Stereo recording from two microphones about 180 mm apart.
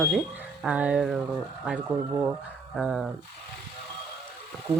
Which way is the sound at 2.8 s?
5° right (ahead or behind).